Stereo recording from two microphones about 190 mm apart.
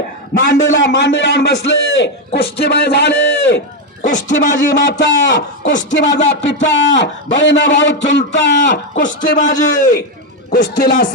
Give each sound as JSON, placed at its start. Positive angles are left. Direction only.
{"t": 0.3, "sound": "a man's voice", "side_deg": 70}
{"t": 4.0, "sound": "a man's voice", "side_deg": 40}
{"t": 4.7, "sound": "a man's voice", "side_deg": 70}
{"t": 9.0, "sound": "a man's voice", "side_deg": 45}
{"t": 10.5, "sound": "a man's voice", "side_deg": 55}